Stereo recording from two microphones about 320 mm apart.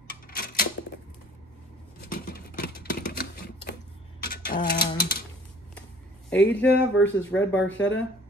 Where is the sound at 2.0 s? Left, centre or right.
Left.